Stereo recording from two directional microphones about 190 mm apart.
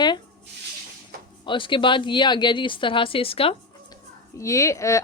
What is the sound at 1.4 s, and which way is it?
Speech, 25° left (ahead or behind).